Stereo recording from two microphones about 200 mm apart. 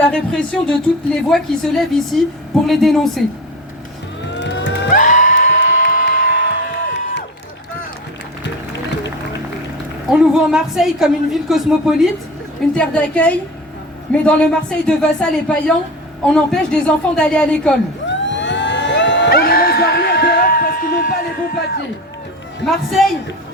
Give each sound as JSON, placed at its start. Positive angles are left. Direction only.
{"t": 0.0, "sound": "a woman's voice", "side_deg": 5}
{"t": 4.4, "sound": "music", "side_deg": 60}
{"t": 4.9, "sound": "music", "side_deg": 40}
{"t": 6.7, "sound": "music", "side_deg": 60}
{"t": 10.1, "sound": "a woman's voice", "side_deg": -5}
{"t": 18.1, "sound": "a sound", "side_deg": 65}
{"t": 22.6, "sound": "a woman's voice", "side_deg": 0}